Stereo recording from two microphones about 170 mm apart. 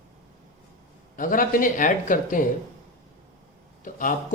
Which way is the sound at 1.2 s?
55° left (ahead or behind).